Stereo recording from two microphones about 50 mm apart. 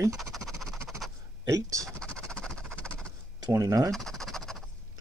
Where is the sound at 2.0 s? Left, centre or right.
Centre.